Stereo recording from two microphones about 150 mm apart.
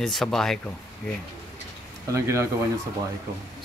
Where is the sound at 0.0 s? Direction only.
Centre (ahead or behind).